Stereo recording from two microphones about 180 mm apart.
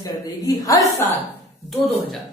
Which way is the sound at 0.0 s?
20° left (ahead or behind).